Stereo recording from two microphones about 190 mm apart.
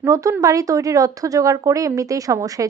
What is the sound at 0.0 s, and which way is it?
Speech, 15° right (ahead or behind).